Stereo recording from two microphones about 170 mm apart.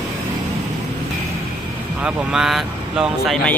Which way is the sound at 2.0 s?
5° right (ahead or behind).